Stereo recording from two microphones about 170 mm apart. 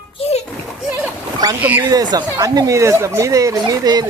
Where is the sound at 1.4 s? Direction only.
25° right (ahead or behind).